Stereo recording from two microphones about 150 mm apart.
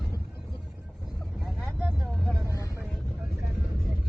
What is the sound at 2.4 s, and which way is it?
Vehicle, 20° left (ahead or behind).